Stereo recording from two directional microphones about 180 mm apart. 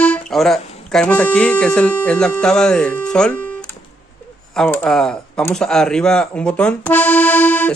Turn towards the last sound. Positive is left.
turn(degrees=10)  # may be behind; listen again after turning